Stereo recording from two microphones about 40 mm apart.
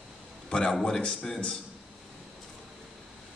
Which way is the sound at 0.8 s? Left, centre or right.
Left.